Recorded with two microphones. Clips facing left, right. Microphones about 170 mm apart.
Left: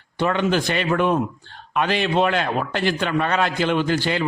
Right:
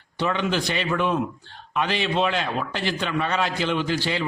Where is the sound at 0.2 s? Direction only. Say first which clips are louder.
Left 4 dB; 50° left (ahead or behind).